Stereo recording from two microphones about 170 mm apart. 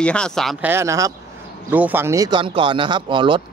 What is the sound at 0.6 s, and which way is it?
Speech, 15° right (ahead or behind).